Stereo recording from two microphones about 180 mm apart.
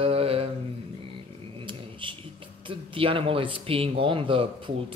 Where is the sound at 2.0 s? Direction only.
30° right (ahead or behind).